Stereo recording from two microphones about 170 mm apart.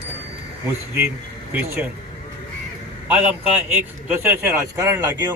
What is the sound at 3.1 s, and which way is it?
A man's voice, 10° right (ahead or behind).